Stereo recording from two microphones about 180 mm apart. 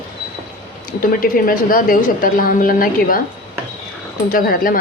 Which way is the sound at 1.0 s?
55° left (ahead or behind).